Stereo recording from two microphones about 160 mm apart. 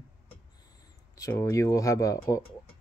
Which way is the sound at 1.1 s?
20° left (ahead or behind).